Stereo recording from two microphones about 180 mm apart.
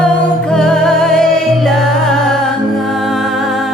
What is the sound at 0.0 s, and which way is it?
Music, 5° left (ahead or behind).